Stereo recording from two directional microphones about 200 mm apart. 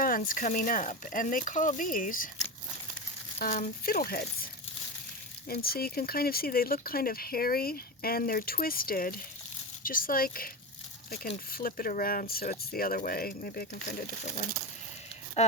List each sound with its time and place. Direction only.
0.0 s speech: 45° left (ahead or behind)
3.3 s speech: 40° left (ahead or behind)
5.5 s speech: 50° left (ahead or behind)
11.5 s speech: 45° left (ahead or behind)
15.4 s speech: 35° left (ahead or behind)